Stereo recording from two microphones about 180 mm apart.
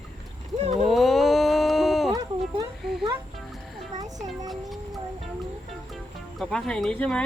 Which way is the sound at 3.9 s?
40° right (ahead or behind).